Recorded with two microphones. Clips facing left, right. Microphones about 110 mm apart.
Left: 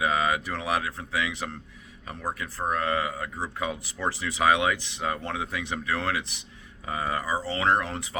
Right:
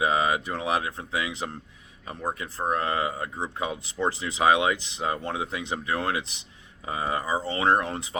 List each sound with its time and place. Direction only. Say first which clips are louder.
0.0 s speech: right 1 dB; 25° right (ahead or behind)